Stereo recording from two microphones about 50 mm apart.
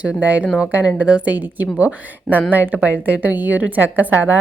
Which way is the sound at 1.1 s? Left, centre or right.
Centre.